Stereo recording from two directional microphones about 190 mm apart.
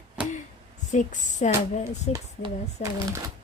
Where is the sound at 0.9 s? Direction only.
40° left (ahead or behind).